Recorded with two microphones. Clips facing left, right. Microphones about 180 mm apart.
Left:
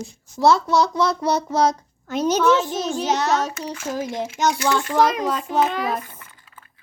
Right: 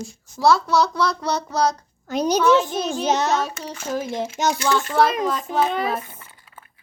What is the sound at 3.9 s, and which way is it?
Speech, 10° left (ahead or behind).